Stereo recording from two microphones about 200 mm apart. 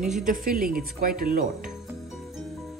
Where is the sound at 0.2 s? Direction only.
45° right (ahead or behind).